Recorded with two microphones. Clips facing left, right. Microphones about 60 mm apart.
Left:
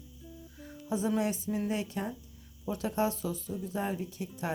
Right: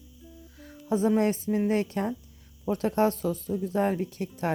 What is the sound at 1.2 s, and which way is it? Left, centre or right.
A woman's voice, right.